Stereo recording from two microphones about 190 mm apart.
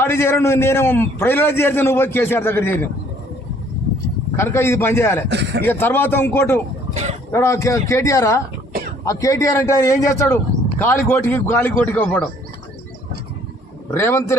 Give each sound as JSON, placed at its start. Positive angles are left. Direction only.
{"t": 0.0, "sound": "speech", "side_deg": 10}
{"t": 4.4, "sound": "speech", "side_deg": 15}
{"t": 5.3, "sound": "a man's voice", "side_deg": -65}
{"t": 5.6, "sound": "speech", "side_deg": 10}
{"t": 6.9, "sound": "a sound", "side_deg": -35}
{"t": 7.3, "sound": "speech", "side_deg": 15}
{"t": 13.9, "sound": "speech", "side_deg": 15}